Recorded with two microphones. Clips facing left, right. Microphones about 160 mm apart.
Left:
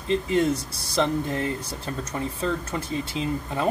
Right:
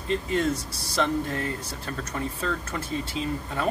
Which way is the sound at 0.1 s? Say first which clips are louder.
Left 3 dB; 20° left (ahead or behind).